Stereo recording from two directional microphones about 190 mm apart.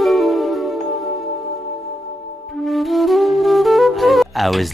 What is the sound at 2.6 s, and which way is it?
Music, centre (ahead or behind).